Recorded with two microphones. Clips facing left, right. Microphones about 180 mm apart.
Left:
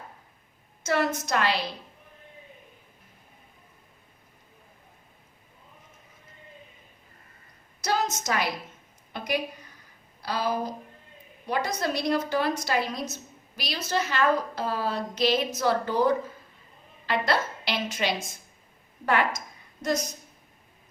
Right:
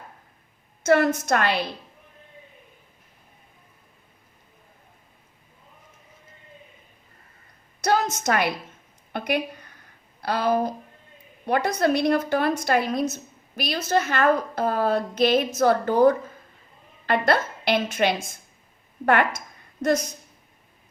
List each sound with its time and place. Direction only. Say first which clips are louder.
0.9 s a woman's voice: right 7 dB; 55° right (ahead or behind)
7.8 s a sound: right 5 dB; 55° right (ahead or behind)
9.1 s a woman's voice: right 4 dB; 60° right (ahead or behind)